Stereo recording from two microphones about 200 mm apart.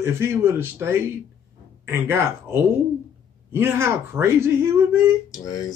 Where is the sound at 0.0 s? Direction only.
10° right (ahead or behind).